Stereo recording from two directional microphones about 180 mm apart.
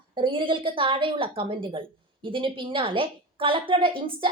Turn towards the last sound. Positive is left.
turn(degrees=-30)  # may be behind; listen again after turning